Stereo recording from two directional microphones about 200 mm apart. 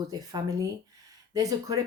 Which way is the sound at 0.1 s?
20° right (ahead or behind).